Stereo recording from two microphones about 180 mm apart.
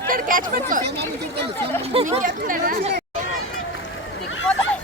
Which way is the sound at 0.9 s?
65° right (ahead or behind).